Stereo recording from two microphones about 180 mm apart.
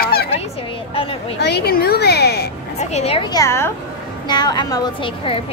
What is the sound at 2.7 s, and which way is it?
Speech, 35° left (ahead or behind).